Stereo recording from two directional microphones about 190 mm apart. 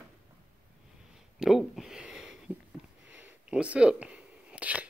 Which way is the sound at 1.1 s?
Centre (ahead or behind).